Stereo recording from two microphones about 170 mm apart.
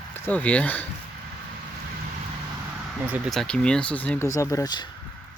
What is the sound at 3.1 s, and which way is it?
Speech, centre (ahead or behind).